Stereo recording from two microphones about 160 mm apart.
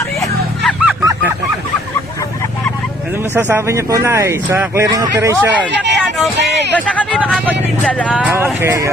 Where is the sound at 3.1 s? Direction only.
15° right (ahead or behind).